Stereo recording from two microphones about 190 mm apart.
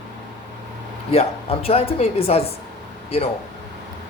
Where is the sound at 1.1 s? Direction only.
30° left (ahead or behind).